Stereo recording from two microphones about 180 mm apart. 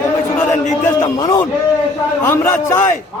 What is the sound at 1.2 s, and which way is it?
A man's voice, 15° left (ahead or behind).